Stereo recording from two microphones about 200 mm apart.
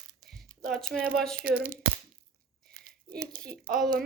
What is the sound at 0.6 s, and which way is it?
Speech, centre (ahead or behind).